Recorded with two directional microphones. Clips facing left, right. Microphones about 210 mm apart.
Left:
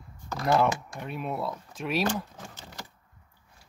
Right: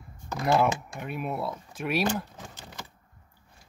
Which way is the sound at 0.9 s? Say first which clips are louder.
Right 1 dB; 5° right (ahead or behind).